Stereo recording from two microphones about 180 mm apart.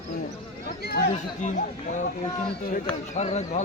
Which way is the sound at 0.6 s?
60° left (ahead or behind).